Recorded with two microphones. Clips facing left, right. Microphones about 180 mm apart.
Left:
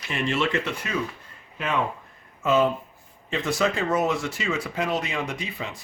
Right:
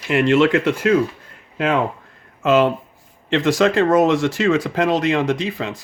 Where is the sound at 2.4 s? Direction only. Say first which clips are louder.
Right 6 dB; 80° right.